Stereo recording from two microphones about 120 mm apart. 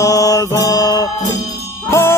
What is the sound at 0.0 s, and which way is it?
Music, 30° left (ahead or behind).